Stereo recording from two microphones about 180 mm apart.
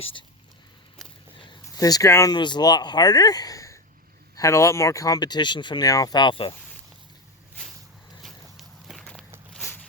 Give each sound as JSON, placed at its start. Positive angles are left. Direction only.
{"t": 0.0, "sound": "speech", "side_deg": 30}
{"t": 1.5, "sound": "speech", "side_deg": 25}
{"t": 8.2, "sound": "walk", "side_deg": 0}
{"t": 9.5, "sound": "a sound", "side_deg": 10}